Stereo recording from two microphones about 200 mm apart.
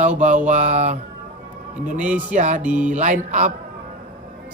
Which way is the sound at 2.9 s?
35° right (ahead or behind).